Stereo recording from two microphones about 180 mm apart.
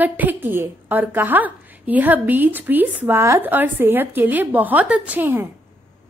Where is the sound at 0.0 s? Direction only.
10° right (ahead or behind).